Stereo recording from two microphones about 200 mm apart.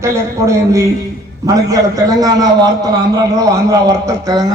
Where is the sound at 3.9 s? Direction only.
15° right (ahead or behind).